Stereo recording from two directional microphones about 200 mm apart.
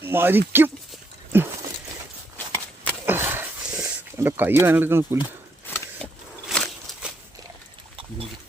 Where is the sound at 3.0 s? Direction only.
10° right (ahead or behind).